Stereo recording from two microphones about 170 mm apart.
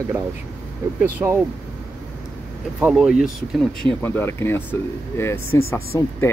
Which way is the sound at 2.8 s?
5° right (ahead or behind).